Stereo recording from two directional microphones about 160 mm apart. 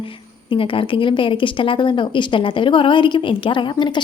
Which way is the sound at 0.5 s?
35° left (ahead or behind).